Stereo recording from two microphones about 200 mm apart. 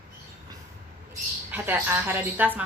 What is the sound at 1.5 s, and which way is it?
A woman's voice, 10° right (ahead or behind).